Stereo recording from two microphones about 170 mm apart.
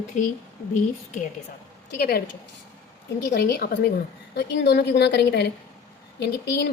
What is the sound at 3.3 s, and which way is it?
Speech, 65° left (ahead or behind).